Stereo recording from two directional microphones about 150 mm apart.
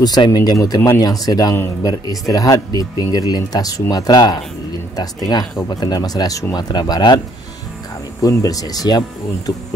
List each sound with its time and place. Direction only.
0.0 s speech: 25° left (ahead or behind)
5.7 s speech: 25° left (ahead or behind)
8.2 s speech: 20° left (ahead or behind)